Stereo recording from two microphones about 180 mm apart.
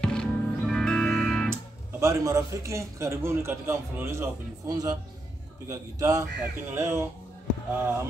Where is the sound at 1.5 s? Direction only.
15° right (ahead or behind).